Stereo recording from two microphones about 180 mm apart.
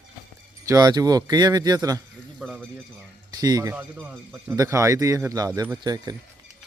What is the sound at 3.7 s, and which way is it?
Speech, 10° right (ahead or behind).